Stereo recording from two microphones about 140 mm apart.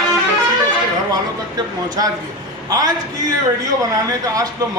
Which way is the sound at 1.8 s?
30° right (ahead or behind).